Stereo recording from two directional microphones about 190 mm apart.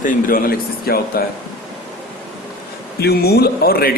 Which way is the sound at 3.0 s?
55° left (ahead or behind).